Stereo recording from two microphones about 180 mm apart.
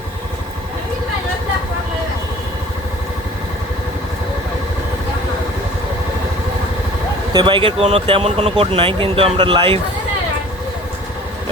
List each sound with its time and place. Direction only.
7.3 s speech: 25° right (ahead or behind)